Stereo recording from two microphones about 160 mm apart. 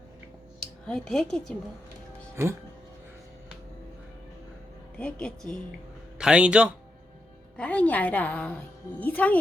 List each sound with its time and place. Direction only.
0.6 s speech: 5° left (ahead or behind)
2.3 s speech: 15° right (ahead or behind)
4.9 s speech: 5° left (ahead or behind)
6.1 s speech: 5° right (ahead or behind)
7.5 s a woman's voice: 10° left (ahead or behind)